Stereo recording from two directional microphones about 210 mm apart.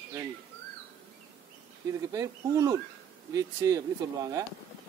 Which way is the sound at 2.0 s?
15° right (ahead or behind).